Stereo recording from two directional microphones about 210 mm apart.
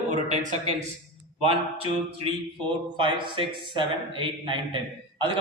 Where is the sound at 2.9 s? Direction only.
25° right (ahead or behind).